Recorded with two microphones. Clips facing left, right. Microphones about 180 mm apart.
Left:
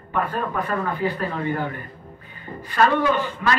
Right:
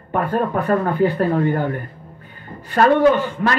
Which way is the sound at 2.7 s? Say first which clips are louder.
Right 6 dB; 40° right (ahead or behind).